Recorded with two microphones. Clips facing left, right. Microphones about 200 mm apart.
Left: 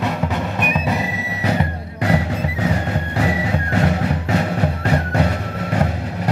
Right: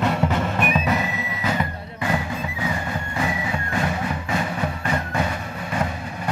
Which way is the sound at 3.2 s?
70° left (ahead or behind).